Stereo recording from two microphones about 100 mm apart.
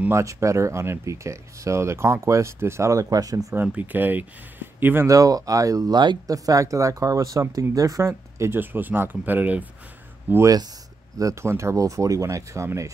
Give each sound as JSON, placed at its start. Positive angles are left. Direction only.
{"t": 0.1, "sound": "speech", "side_deg": -30}
{"t": 3.6, "sound": "speech", "side_deg": -15}
{"t": 5.0, "sound": "speech", "side_deg": -35}
{"t": 11.1, "sound": "speech", "side_deg": -30}